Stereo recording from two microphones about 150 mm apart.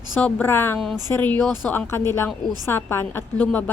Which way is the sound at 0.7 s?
Centre (ahead or behind).